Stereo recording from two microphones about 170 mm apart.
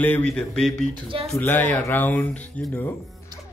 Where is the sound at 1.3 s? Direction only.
10° left (ahead or behind).